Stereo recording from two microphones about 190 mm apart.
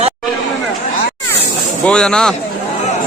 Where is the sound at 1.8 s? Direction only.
5° left (ahead or behind).